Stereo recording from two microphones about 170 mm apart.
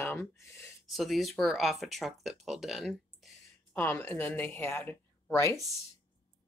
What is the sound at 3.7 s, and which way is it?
Speech, 10° left (ahead or behind).